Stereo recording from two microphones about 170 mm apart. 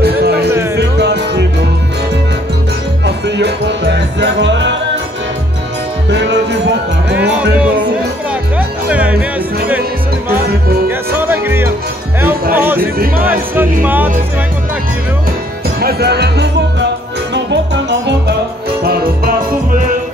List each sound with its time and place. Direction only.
0.2 s music: 75° right (ahead or behind)
3.3 s music: 85° right
6.0 s music: 90° right
7.6 s music: 10° right (ahead or behind)
10.9 s music: 10° right (ahead or behind)
13.2 s speech: 10° right (ahead or behind)
15.8 s music: 70° right (ahead or behind)
17.3 s music: 90° right
18.9 s music: 60° right (ahead or behind)